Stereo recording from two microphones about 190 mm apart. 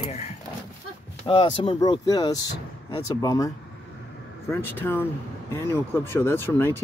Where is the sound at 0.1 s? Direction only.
35° left (ahead or behind).